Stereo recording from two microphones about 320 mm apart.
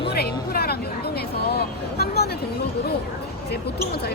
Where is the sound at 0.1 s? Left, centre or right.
Left.